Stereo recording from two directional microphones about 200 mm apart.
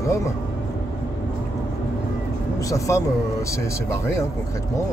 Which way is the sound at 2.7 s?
15° left (ahead or behind).